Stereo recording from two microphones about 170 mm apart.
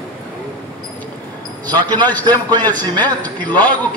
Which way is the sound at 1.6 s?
25° right (ahead or behind).